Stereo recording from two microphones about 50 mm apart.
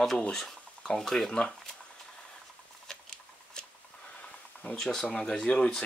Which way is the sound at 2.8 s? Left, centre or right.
Centre.